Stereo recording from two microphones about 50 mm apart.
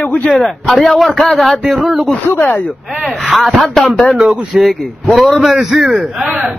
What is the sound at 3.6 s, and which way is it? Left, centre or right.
A man's voice, centre.